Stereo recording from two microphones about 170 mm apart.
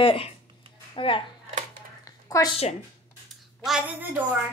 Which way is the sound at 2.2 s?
20° left (ahead or behind).